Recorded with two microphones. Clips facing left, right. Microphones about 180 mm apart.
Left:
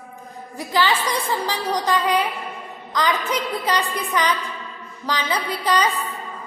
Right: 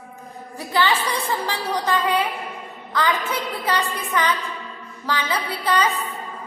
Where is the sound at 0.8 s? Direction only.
10° left (ahead or behind).